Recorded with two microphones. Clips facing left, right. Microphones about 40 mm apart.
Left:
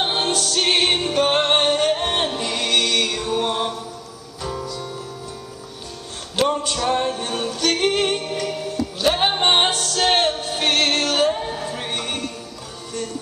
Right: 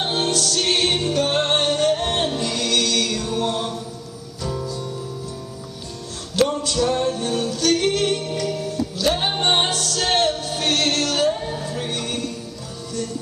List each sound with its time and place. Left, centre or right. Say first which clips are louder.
0.0 s music: even; left
6.3 s music: right 1 dB; left